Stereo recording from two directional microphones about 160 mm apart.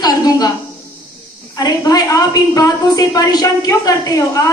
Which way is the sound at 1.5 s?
25° left (ahead or behind).